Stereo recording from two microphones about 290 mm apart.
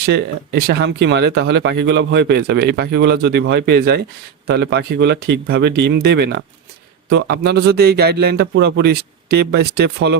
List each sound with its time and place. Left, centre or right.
0.0 s a man's voice: right